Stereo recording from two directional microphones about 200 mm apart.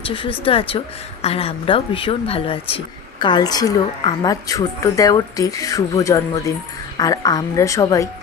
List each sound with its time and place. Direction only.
0.0 s a woman's voice: 25° left (ahead or behind)